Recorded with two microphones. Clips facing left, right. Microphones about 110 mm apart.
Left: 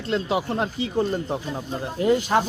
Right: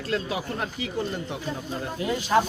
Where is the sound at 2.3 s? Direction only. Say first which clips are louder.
Even; 40° left (ahead or behind).